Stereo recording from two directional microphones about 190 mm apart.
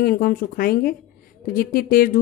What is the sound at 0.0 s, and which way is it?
Speech, 50° left (ahead or behind).